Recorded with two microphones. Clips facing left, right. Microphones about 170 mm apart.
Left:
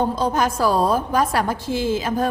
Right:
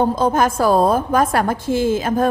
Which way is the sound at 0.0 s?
50° right (ahead or behind).